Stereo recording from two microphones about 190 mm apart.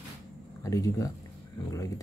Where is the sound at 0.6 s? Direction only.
15° left (ahead or behind).